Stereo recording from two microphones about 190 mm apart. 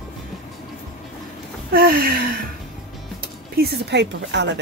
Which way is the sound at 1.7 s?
50° right (ahead or behind).